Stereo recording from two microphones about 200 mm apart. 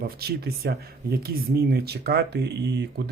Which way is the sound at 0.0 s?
50° right (ahead or behind).